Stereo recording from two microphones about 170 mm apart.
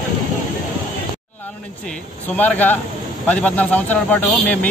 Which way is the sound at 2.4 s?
10° left (ahead or behind).